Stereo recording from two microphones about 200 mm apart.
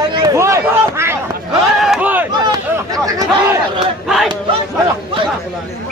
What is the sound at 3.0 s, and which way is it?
Chatter, 15° right (ahead or behind).